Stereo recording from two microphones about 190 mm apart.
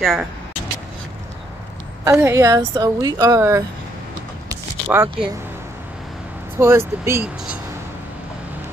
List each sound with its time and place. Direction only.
0.0 s speech: centre (ahead or behind)
2.0 s a woman's voice: 15° right (ahead or behind)
4.5 s a sound: 10° right (ahead or behind)
6.6 s a woman's voice: 15° right (ahead or behind)